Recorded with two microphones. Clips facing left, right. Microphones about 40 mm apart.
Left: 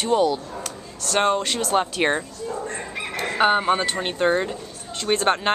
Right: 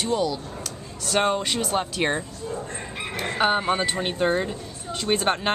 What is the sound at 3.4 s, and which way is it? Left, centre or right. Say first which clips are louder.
Speech: left 3 dB; centre.